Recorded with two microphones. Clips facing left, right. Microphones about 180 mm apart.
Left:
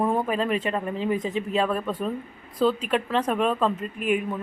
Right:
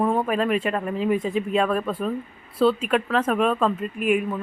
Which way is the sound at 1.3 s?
10° right (ahead or behind).